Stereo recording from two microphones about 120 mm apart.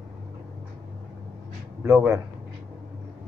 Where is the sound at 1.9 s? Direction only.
10° right (ahead or behind).